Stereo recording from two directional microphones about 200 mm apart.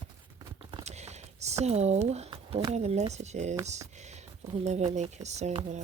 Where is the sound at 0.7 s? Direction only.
35° right (ahead or behind).